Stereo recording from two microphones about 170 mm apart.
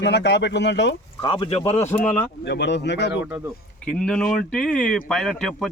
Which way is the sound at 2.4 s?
90° left.